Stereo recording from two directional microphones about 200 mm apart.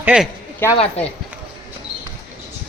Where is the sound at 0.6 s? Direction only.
10° left (ahead or behind).